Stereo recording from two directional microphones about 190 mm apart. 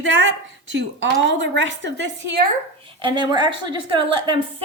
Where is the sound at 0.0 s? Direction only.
75° right (ahead or behind).